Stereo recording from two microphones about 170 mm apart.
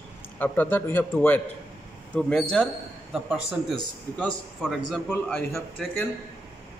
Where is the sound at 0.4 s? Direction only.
10° left (ahead or behind).